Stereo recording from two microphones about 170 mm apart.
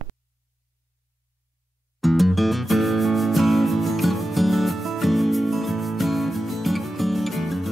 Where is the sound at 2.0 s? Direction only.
Centre (ahead or behind).